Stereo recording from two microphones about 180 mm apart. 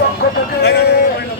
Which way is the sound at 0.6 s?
70° left (ahead or behind).